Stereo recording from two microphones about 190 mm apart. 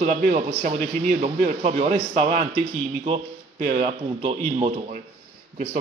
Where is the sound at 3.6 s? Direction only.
35° right (ahead or behind).